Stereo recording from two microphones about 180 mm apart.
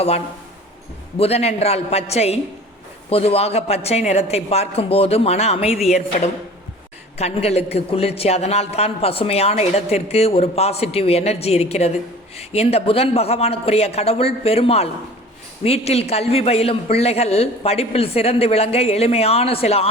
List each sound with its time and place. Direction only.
1.2 s a woman's voice: 35° left (ahead or behind)